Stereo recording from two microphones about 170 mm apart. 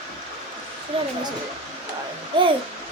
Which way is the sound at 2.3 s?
30° right (ahead or behind).